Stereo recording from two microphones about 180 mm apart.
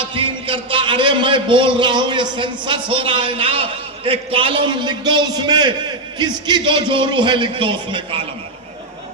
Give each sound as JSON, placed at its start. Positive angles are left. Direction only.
{"t": 0.0, "sound": "a man's voice", "side_deg": -30}